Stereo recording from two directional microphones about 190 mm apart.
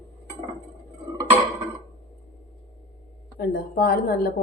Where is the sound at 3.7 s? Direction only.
50° left (ahead or behind).